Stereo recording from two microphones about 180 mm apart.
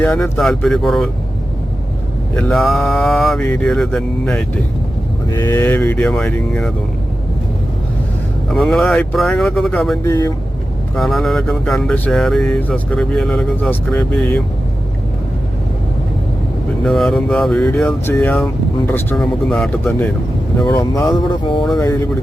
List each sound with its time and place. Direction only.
0.0 s speech: centre (ahead or behind)
2.3 s speech: centre (ahead or behind)
5.3 s speech: 15° left (ahead or behind)
8.4 s speech: centre (ahead or behind)
10.0 s speech: 20° left (ahead or behind)
10.9 s speech: centre (ahead or behind)
16.8 s speech: centre (ahead or behind)
20.6 s speech: 20° left (ahead or behind)